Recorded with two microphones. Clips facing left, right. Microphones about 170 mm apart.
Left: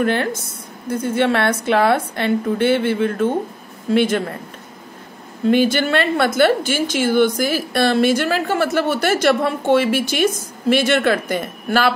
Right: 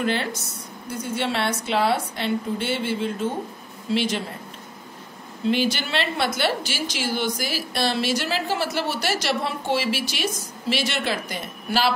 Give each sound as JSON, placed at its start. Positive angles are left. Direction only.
{"t": 0.0, "sound": "a woman's voice", "side_deg": 50}
{"t": 5.5, "sound": "a woman's voice", "side_deg": 50}